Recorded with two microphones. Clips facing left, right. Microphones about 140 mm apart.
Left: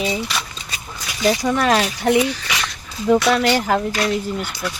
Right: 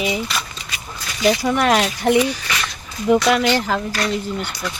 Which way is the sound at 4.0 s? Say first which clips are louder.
Left 1 dB; 5° left (ahead or behind).